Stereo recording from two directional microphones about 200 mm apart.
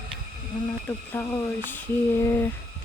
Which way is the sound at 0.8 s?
10° left (ahead or behind).